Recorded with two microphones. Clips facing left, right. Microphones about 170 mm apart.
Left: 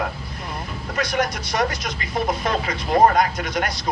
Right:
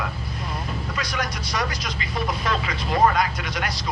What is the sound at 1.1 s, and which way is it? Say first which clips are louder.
Speech: left 6 dB; 50° left (ahead or behind).